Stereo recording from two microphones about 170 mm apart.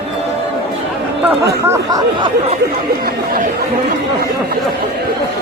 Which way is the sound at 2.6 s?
60° right (ahead or behind).